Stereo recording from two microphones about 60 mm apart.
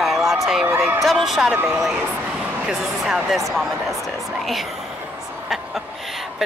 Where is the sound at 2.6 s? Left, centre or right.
Centre.